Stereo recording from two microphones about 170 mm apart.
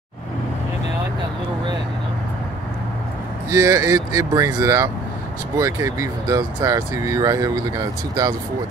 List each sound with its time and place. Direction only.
3.4 s speech: 20° right (ahead or behind)